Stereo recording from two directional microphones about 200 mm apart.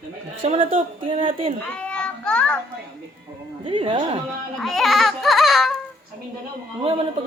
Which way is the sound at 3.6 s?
25° right (ahead or behind).